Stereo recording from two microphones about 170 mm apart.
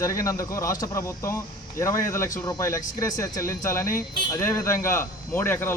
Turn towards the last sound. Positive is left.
turn(degrees=15)  # may be behind; listen again after turning